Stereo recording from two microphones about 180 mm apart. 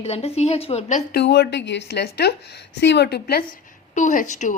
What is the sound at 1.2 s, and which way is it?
A woman's voice, 70° left (ahead or behind).